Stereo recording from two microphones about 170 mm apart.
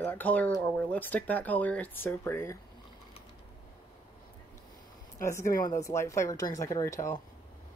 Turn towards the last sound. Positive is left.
turn(degrees=15)  # may be behind; listen again after turning